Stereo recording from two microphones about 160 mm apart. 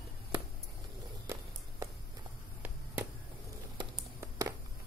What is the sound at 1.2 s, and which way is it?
Walk, 20° right (ahead or behind).